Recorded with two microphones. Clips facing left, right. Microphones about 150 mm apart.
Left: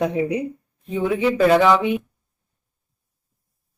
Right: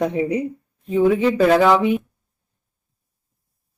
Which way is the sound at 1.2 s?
Centre (ahead or behind).